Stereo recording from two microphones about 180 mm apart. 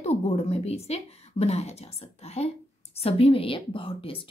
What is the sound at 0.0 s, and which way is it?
A woman's voice, 35° left (ahead or behind).